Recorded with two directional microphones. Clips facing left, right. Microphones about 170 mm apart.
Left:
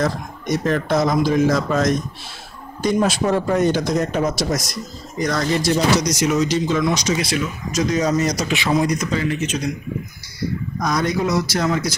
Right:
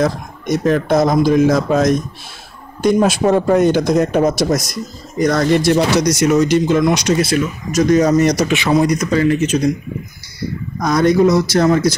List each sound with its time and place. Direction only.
0.0 s a man's voice: 50° right (ahead or behind); by 8.9 s 70° right (ahead or behind)
8.9 s a man's voice: 50° right (ahead or behind)
10.8 s a man's voice: 55° right (ahead or behind)